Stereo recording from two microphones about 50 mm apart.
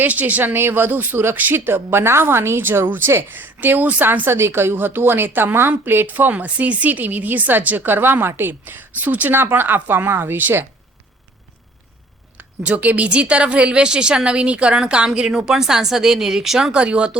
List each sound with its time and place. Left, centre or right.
0.0 s a woman's voice: right
0.5 s a woman's voice: right
4.3 s a woman's voice: right
9.3 s a woman's voice: right
12.4 s a woman's voice: right; by 16.7 s centre
16.7 s a woman's voice: right